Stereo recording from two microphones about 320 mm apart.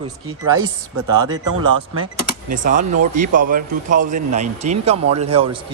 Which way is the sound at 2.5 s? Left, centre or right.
Right.